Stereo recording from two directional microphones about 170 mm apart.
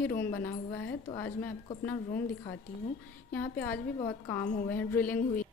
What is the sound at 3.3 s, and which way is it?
Speech, 10° left (ahead or behind).